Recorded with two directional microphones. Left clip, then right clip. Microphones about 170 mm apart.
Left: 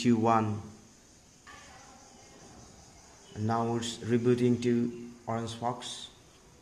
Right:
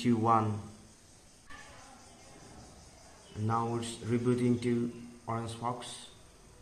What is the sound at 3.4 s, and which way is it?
Speech, 40° left (ahead or behind).